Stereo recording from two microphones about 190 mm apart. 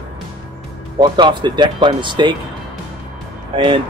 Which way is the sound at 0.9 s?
25° right (ahead or behind).